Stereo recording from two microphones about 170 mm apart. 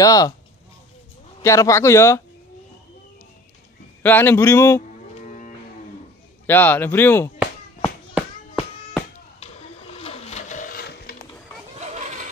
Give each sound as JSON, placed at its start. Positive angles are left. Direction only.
{"t": 0.0, "sound": "speech", "side_deg": 20}
{"t": 1.4, "sound": "speech", "side_deg": 15}
{"t": 4.0, "sound": "speech", "side_deg": 10}
{"t": 5.2, "sound": "music", "side_deg": 50}
{"t": 6.4, "sound": "speech", "side_deg": 10}
{"t": 8.1, "sound": "music", "side_deg": -5}
{"t": 9.9, "sound": "a sound", "side_deg": 35}
{"t": 11.8, "sound": "a sound", "side_deg": -45}